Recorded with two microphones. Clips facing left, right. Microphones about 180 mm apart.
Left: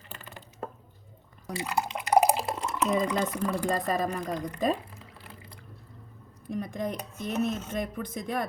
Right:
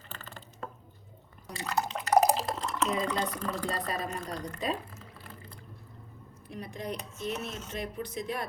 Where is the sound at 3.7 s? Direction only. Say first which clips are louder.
Left 6 dB; 45° left (ahead or behind).